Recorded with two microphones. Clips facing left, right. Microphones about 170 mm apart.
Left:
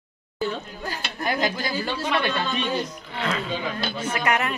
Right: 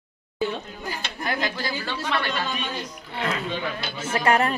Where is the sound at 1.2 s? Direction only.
20° left (ahead or behind).